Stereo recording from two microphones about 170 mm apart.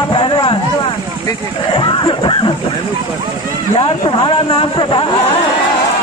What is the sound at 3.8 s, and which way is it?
Speech, 30° left (ahead or behind).